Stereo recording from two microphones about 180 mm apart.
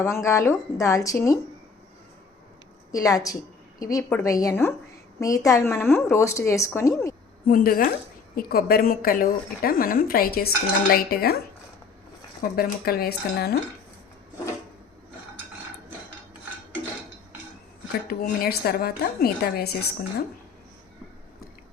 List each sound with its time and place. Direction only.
0.0 s speech: 15° left (ahead or behind)
2.9 s a woman's voice: 20° left (ahead or behind)
7.4 s a woman's voice: 50° left (ahead or behind)
12.5 s speech: 55° left (ahead or behind)
18.1 s speech: 55° left (ahead or behind)